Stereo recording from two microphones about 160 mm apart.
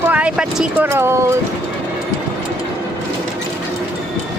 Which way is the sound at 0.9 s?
15° right (ahead or behind).